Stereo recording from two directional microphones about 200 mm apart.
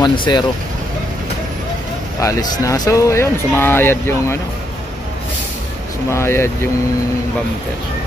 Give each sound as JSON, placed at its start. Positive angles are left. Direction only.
{"t": 0.0, "sound": "speech", "side_deg": 20}
{"t": 2.1, "sound": "speech", "side_deg": 20}
{"t": 6.1, "sound": "speech", "side_deg": 10}